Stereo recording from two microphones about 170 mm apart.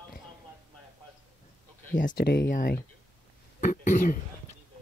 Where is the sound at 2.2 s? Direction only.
70° left (ahead or behind); by 4.1 s 50° left (ahead or behind).